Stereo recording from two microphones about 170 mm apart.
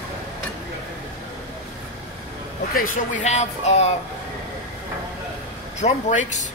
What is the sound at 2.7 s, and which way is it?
Speech, 50° left (ahead or behind).